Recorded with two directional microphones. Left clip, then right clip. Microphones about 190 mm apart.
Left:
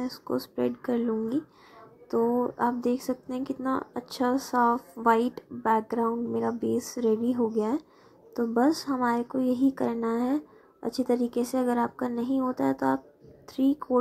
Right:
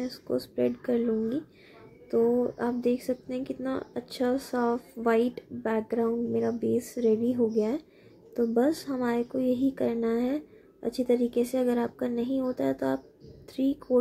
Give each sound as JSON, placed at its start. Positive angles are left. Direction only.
{"t": 0.0, "sound": "a woman's voice", "side_deg": 15}